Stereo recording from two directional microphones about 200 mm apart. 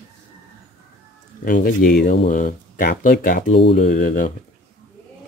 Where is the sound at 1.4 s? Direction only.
45° left (ahead or behind).